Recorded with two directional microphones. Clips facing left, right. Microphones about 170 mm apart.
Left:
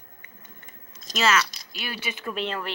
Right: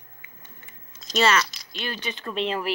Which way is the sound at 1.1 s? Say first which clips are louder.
Right 2 dB; centre (ahead or behind).